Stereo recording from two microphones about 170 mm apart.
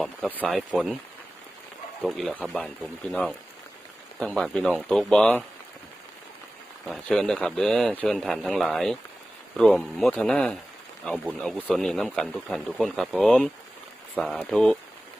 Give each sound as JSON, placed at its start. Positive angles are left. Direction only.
{"t": 0.0, "sound": "speech", "side_deg": 5}
{"t": 2.0, "sound": "speech", "side_deg": 0}
{"t": 6.8, "sound": "speech", "side_deg": 0}